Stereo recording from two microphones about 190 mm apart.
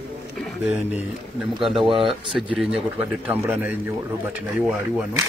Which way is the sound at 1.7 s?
25° right (ahead or behind).